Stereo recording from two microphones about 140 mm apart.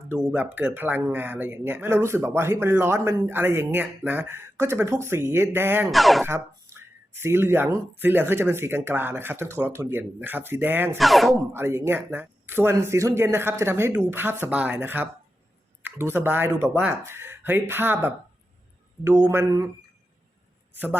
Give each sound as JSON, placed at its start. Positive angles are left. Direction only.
{"t": 0.1, "sound": "speech", "side_deg": -15}
{"t": 5.9, "sound": "speech", "side_deg": 0}
{"t": 6.2, "sound": "speech", "side_deg": -20}
{"t": 10.9, "sound": "speech", "side_deg": 0}
{"t": 11.5, "sound": "a man's voice", "side_deg": -20}